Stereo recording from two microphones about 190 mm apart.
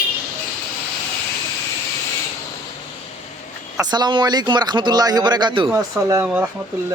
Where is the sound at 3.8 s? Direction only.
20° right (ahead or behind).